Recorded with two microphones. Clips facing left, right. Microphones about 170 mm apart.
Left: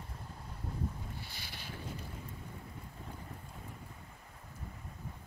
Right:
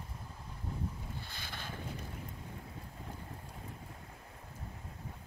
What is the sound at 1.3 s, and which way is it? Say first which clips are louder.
Boat: right 3 dB; 50° right (ahead or behind).